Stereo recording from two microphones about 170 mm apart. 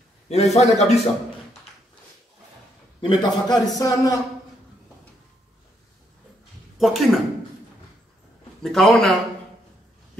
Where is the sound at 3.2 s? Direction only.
25° left (ahead or behind).